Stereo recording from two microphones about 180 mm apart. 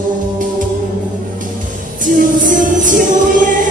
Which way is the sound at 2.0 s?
45° right (ahead or behind).